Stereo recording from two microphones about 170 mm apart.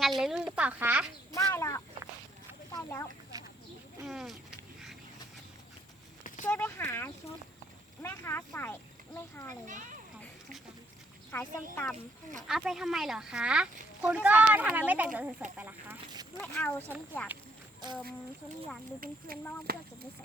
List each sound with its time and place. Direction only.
0.2 s speech: centre (ahead or behind)
1.3 s speech: 15° left (ahead or behind)
4.0 s speech: centre (ahead or behind)
6.4 s speech: 15° left (ahead or behind)
9.6 s a child's voice: 50° right (ahead or behind)
11.3 s speech: 15° left (ahead or behind)
12.5 s speech: centre (ahead or behind)
16.4 s speech: 10° left (ahead or behind)
18.9 s speech: 55° right (ahead or behind)